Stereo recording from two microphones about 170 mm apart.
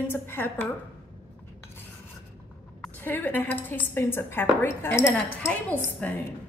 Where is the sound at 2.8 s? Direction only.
10° left (ahead or behind).